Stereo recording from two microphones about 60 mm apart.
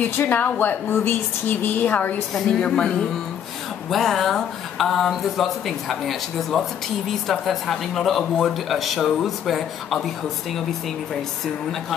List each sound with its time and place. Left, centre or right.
0.0 s a woman's voice: left
2.3 s speech: centre